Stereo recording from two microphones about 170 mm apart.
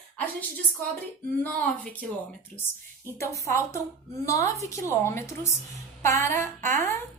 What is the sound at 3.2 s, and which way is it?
A woman's voice, 15° left (ahead or behind).